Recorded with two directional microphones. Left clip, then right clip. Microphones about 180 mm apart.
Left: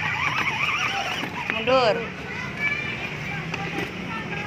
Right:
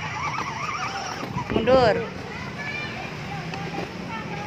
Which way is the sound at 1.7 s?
30° right (ahead or behind).